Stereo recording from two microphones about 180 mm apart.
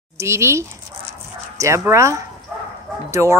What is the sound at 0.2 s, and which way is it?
Speech, 15° right (ahead or behind).